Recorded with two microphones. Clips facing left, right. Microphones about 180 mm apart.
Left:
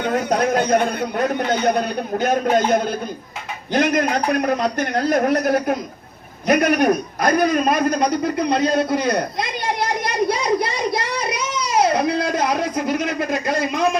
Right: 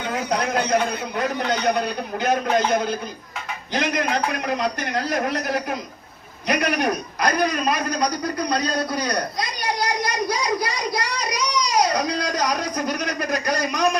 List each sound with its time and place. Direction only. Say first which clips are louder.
0.0 s a man's voice: left 5 dB; 55° left (ahead or behind)
3.7 s a man's voice: left 5 dB; 50° left (ahead or behind)
8.0 s a man's voice: left 5 dB; 25° left (ahead or behind)